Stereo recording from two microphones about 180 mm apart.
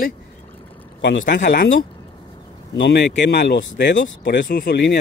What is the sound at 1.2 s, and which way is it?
Speech, 50° left (ahead or behind).